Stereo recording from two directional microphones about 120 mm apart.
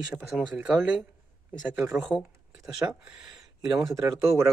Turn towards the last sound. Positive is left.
turn(degrees=-25)  # may be behind; listen again after turning